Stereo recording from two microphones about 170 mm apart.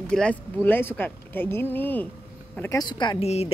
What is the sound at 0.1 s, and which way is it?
Speech, 5° left (ahead or behind).